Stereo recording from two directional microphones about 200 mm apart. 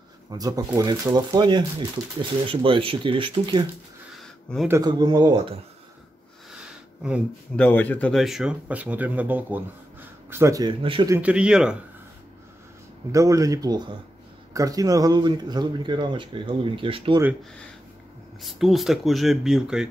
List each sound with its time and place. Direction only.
0.3 s speech: 20° right (ahead or behind)
4.6 s speech: 15° right (ahead or behind)
7.5 s speech: 10° left (ahead or behind); by 11.1 s 25° right (ahead or behind)
11.1 s speech: 5° right (ahead or behind)
13.1 s speech: 15° right (ahead or behind)
18.4 s speech: centre (ahead or behind)